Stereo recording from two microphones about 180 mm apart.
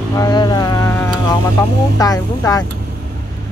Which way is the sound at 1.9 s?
20° left (ahead or behind).